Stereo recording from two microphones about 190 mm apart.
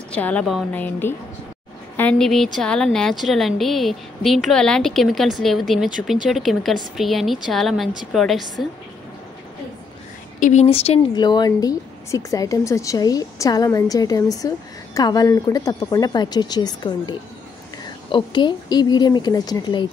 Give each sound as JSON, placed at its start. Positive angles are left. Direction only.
{"t": 0.1, "sound": "a woman's voice", "side_deg": 5}
{"t": 10.4, "sound": "a woman's voice", "side_deg": 35}